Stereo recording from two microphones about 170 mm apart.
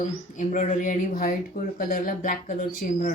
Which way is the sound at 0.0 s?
45° left (ahead or behind).